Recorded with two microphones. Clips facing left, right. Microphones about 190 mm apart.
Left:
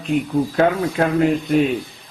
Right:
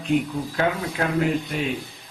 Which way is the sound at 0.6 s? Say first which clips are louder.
Left 5 dB; 45° left (ahead or behind).